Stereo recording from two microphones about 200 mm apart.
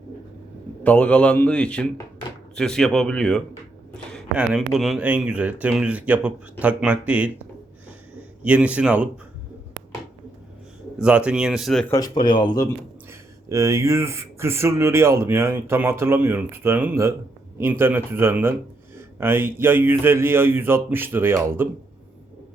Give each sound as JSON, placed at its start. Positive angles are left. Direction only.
{"t": 0.9, "sound": "a man's voice", "side_deg": 5}
{"t": 8.4, "sound": "speech", "side_deg": -5}
{"t": 10.9, "sound": "a man's voice", "side_deg": -5}
{"t": 11.9, "sound": "speech", "side_deg": 20}
{"t": 13.1, "sound": "speech", "side_deg": -15}